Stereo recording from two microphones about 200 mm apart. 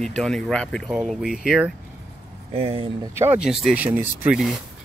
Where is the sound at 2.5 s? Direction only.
30° right (ahead or behind).